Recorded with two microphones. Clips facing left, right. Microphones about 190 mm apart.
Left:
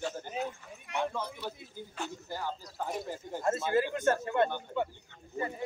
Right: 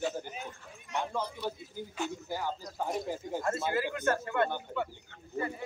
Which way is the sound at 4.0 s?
20° left (ahead or behind).